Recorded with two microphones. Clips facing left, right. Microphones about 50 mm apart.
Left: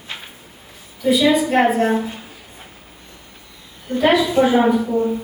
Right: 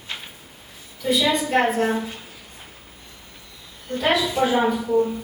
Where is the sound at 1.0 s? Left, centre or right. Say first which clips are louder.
Left 6 dB; centre.